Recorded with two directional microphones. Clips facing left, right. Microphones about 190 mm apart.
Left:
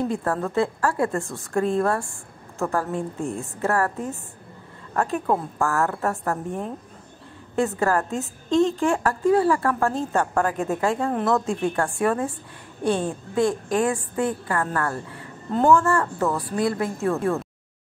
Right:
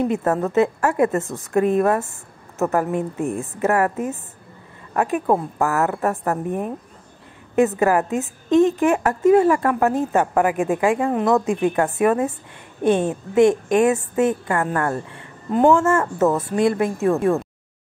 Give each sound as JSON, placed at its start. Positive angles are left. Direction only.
{"t": 0.0, "sound": "a woman's voice", "side_deg": -20}
{"t": 7.8, "sound": "a woman's voice", "side_deg": -15}